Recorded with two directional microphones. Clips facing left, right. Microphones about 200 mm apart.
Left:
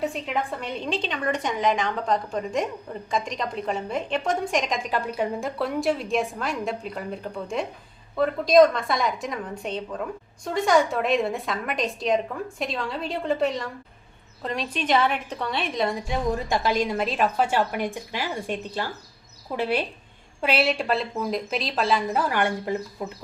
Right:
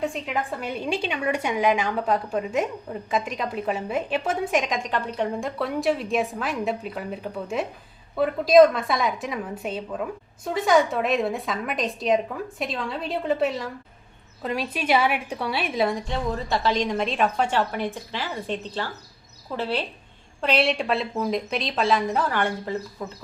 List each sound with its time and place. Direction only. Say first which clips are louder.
0.0 s a woman's voice: even; centre (ahead or behind)
16.0 s a woman's voice: left 2 dB; 15° left (ahead or behind)